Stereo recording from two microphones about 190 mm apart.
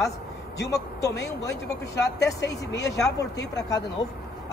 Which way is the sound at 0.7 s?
15° left (ahead or behind).